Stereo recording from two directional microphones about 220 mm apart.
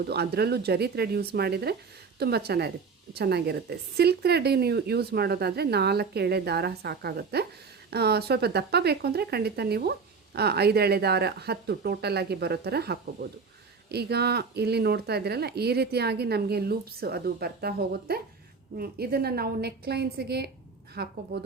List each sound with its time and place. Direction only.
0.1 s a woman's voice: 45° right (ahead or behind)